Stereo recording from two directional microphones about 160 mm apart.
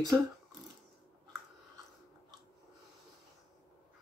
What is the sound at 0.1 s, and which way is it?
Speech, 20° right (ahead or behind).